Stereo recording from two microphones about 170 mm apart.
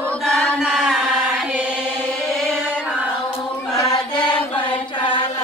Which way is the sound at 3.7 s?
20° left (ahead or behind).